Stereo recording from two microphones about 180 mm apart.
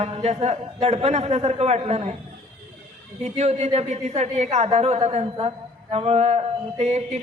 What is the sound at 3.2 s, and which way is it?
A man's voice, 35° right (ahead or behind).